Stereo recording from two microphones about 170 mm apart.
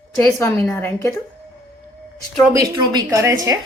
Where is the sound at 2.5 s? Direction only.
20° right (ahead or behind).